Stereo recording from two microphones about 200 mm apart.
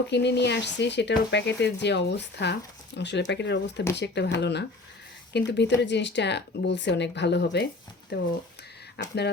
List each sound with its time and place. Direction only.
0.1 s speech: 60° left (ahead or behind)